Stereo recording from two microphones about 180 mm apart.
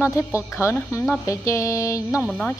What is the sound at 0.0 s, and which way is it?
A woman's voice, 15° left (ahead or behind).